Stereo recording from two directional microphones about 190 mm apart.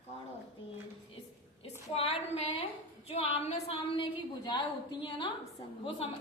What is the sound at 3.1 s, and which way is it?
A woman's voice, 35° left (ahead or behind).